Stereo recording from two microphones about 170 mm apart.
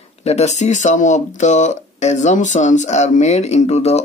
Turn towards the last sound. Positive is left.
turn(degrees=40)  # may be behind; listen again after turning